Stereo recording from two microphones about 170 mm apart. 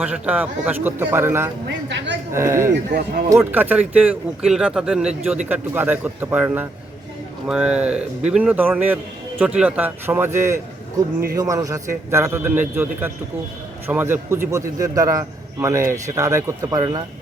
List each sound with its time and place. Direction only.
0.0 s speech: 5° right (ahead or behind)
1.6 s a woman's voice: 90° right
2.3 s a man's voice: 15° right (ahead or behind)